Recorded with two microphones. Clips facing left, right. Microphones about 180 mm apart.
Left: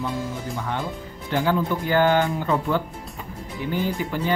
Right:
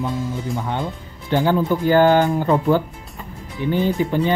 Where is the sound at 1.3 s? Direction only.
35° right (ahead or behind).